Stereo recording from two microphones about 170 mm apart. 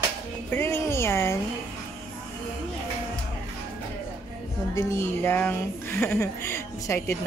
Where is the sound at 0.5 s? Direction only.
15° left (ahead or behind).